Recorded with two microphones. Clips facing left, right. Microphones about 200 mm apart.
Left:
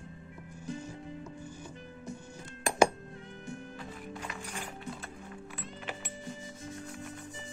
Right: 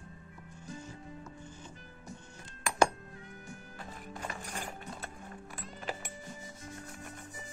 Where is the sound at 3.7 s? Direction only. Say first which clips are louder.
Left 3 dB; 45° right (ahead or behind).